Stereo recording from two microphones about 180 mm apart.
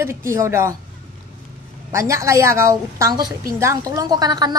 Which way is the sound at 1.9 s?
15° right (ahead or behind).